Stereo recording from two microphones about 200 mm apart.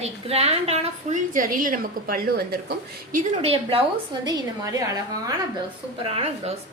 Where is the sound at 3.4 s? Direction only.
30° right (ahead or behind).